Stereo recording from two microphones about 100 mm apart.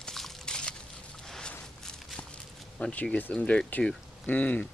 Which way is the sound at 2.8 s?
15° left (ahead or behind).